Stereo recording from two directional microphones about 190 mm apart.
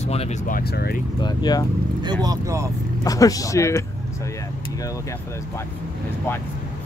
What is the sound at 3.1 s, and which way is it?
Speech, 20° left (ahead or behind).